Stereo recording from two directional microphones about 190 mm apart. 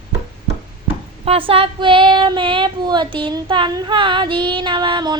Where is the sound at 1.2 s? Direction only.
30° right (ahead or behind).